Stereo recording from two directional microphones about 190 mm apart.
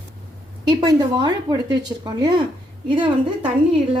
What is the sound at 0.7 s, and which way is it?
Speech, 25° right (ahead or behind).